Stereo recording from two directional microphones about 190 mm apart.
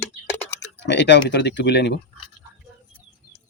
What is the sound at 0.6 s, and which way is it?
Typing, 65° left (ahead or behind).